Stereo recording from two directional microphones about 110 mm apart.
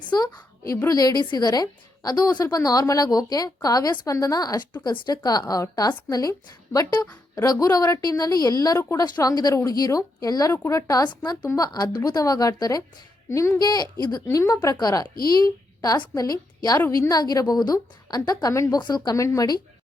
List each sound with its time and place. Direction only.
0.1 s a woman's voice: 40° left (ahead or behind)
13.6 s a woman's voice: 40° left (ahead or behind)
14.3 s speech: 25° left (ahead or behind)
14.5 s a woman's voice: 35° left (ahead or behind)
18.8 s speech: 40° left (ahead or behind)
19.1 s speech: 30° left (ahead or behind)